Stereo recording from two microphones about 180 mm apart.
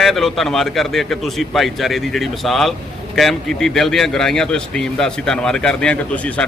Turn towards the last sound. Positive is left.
turn(degrees=5)  # may be behind; listen again after turning